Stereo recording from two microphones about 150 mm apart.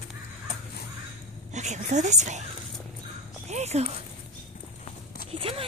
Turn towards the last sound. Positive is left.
turn(degrees=-40)  # may be behind; listen again after turning